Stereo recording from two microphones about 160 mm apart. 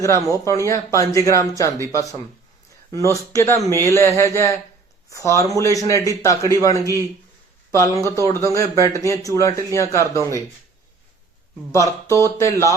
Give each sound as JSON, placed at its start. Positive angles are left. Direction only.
{"t": 0.4, "sound": "a man's voice", "side_deg": 20}
{"t": 11.7, "sound": "speech", "side_deg": 20}